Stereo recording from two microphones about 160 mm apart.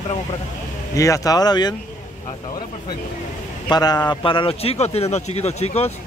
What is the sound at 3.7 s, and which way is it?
A man's voice, 25° left (ahead or behind).